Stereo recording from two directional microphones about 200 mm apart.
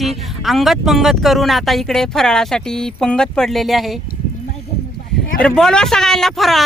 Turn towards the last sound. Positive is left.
turn(degrees=0)  # may be behind; listen again after turning